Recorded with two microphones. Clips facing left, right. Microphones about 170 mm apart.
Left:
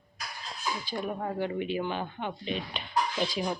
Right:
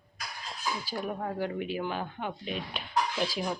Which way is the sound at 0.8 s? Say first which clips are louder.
Left 3 dB; 5° right (ahead or behind).